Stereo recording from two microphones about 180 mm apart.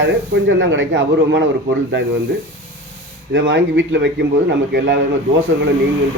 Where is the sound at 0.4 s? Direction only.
90° right.